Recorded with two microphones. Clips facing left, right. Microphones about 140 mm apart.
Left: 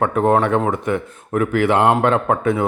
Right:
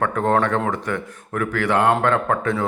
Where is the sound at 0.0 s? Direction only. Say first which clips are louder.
Left 3 dB; 20° left (ahead or behind).